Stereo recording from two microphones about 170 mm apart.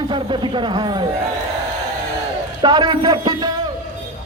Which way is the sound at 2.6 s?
25° right (ahead or behind).